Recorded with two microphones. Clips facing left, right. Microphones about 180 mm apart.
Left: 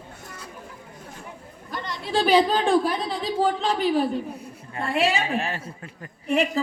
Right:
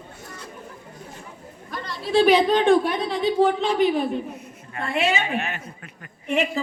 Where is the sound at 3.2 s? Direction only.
35° left (ahead or behind).